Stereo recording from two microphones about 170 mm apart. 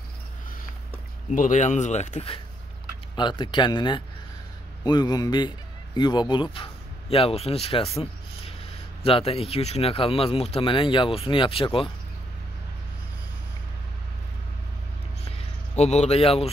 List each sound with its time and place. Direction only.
1.3 s speech: 50° left (ahead or behind); by 7.9 s 35° left (ahead or behind)
9.0 s speech: 35° left (ahead or behind)
15.7 s speech: 40° left (ahead or behind)